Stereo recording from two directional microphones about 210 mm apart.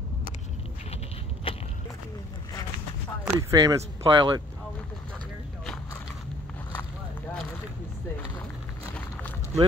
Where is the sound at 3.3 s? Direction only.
15° right (ahead or behind).